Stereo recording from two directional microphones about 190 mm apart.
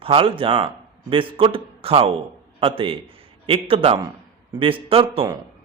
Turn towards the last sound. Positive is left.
turn(degrees=-30)  # may be behind; listen again after turning